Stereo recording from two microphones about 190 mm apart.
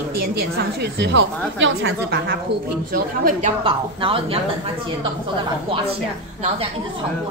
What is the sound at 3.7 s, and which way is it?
Speech, 30° right (ahead or behind).